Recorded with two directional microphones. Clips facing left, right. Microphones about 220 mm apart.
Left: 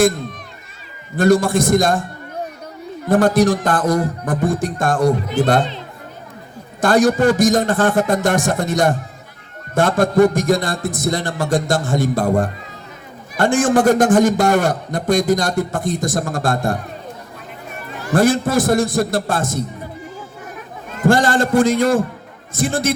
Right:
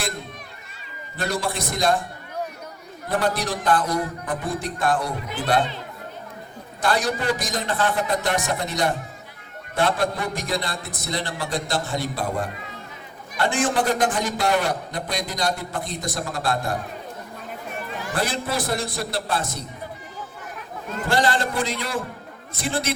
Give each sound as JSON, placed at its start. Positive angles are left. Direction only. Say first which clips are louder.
{"t": 1.1, "sound": "a man's voice", "louder": "left 13 dB", "side_deg": 45}
{"t": 3.1, "sound": "a man's voice", "louder": "left 11 dB", "side_deg": 45}
{"t": 6.8, "sound": "a man's voice", "louder": "left 10 dB", "side_deg": 45}
{"t": 18.1, "sound": "a man's voice", "louder": "left 12 dB", "side_deg": 45}
{"t": 21.1, "sound": "a man's voice", "louder": "left 8 dB", "side_deg": 45}